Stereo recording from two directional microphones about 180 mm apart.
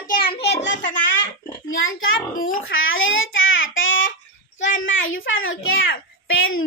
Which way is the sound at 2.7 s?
90° left.